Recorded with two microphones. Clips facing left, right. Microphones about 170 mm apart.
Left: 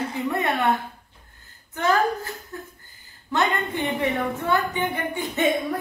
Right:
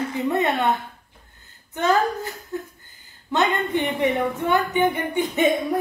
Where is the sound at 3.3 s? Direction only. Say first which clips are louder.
Right 3 dB; 20° right (ahead or behind).